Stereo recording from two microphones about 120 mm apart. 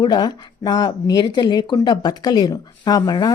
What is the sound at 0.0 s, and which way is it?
Speech, 35° left (ahead or behind).